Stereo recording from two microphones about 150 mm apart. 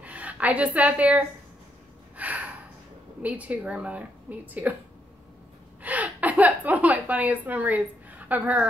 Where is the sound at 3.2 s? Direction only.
10° right (ahead or behind).